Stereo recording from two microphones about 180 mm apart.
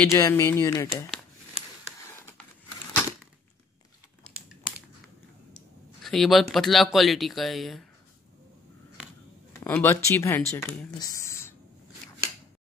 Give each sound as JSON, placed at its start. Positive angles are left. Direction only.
{"t": 0.0, "sound": "speech", "side_deg": 15}
{"t": 6.0, "sound": "speech", "side_deg": 0}
{"t": 9.6, "sound": "speech", "side_deg": 10}
{"t": 11.0, "sound": "speech", "side_deg": 20}